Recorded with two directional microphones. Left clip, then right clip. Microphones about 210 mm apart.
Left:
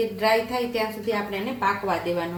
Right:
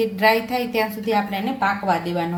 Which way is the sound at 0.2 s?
45° right (ahead or behind).